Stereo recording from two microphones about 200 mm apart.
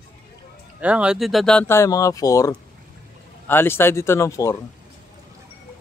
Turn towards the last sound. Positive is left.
turn(degrees=15)  # may be behind; listen again after turning